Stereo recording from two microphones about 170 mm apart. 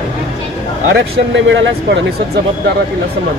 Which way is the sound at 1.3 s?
90° right.